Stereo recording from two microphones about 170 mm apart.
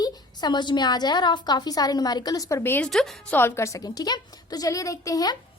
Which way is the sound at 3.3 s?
15° left (ahead or behind).